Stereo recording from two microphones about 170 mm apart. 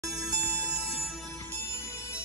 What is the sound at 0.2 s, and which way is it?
Music, 5° right (ahead or behind).